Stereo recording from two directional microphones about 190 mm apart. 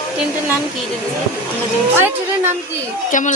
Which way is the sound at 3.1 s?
45° left (ahead or behind).